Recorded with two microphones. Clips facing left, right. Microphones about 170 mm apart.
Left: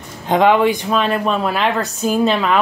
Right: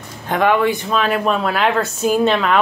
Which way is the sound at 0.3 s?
20° left (ahead or behind).